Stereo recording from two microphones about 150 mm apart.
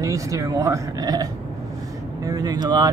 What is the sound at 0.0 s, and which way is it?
Speech, 20° right (ahead or behind).